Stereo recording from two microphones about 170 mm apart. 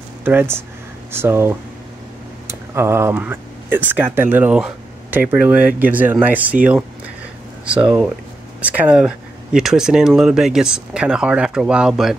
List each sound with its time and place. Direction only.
0.2 s speech: 15° right (ahead or behind)